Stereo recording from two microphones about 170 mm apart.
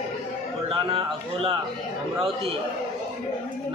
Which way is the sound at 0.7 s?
30° right (ahead or behind).